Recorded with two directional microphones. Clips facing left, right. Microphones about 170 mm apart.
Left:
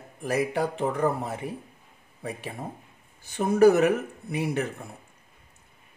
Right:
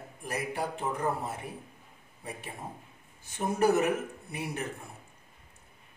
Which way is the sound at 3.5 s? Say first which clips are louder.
Left 8 dB; 90° left.